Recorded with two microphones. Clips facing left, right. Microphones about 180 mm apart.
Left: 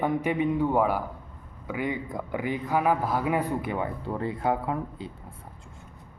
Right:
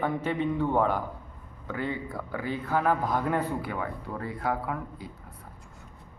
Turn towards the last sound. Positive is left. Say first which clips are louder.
# left 2 dB
turn(degrees=25)  # may be behind; listen again after turning